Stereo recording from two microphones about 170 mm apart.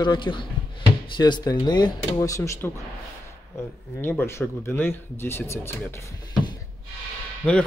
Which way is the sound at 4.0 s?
10° left (ahead or behind).